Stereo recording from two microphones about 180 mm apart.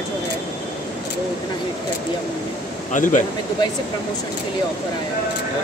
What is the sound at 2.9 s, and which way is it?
Speech, 45° left (ahead or behind).